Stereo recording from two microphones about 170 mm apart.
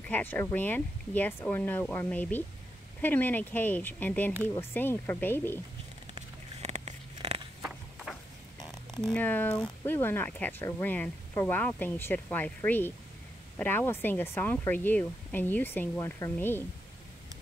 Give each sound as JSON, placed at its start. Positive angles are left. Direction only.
{"t": 0.1, "sound": "speech", "side_deg": 10}
{"t": 6.1, "sound": "a sound", "side_deg": -40}
{"t": 7.6, "sound": "clip-clop", "side_deg": 0}
{"t": 9.0, "sound": "speech", "side_deg": 10}